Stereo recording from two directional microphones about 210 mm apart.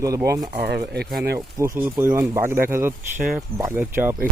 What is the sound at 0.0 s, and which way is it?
Speech, 15° right (ahead or behind).